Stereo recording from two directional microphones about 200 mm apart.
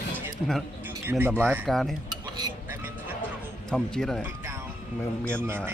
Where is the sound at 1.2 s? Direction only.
10° right (ahead or behind).